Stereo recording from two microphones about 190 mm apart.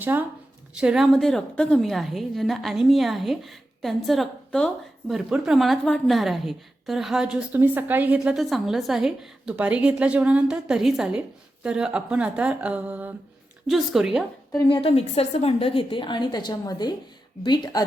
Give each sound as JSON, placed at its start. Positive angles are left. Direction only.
{"t": 0.0, "sound": "a woman's voice", "side_deg": -10}
{"t": 14.7, "sound": "a woman's voice", "side_deg": 30}